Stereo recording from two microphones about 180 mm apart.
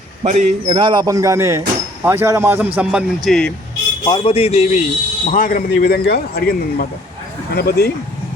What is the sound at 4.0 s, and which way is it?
Speech, 30° left (ahead or behind).